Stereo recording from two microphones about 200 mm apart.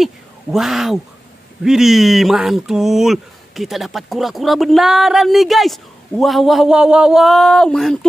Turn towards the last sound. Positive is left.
turn(degrees=0)  # may be behind; listen again after turning